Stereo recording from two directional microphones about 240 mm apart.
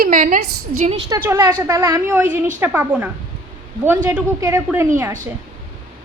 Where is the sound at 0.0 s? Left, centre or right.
Right.